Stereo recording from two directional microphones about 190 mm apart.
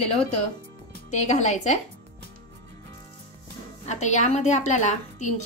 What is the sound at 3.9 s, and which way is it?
A woman's voice, 40° left (ahead or behind).